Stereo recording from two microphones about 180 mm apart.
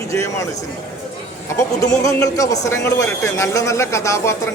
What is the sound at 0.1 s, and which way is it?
Speech, 15° left (ahead or behind).